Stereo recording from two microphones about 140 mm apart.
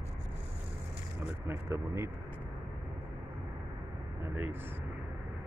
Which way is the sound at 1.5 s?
20° right (ahead or behind).